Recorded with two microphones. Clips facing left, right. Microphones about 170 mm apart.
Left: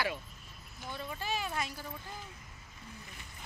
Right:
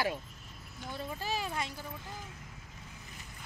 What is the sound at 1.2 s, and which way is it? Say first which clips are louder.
Speech: even; 30° right (ahead or behind).